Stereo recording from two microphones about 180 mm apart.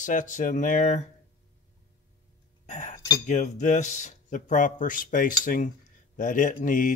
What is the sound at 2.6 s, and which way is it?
Speech, 45° left (ahead or behind).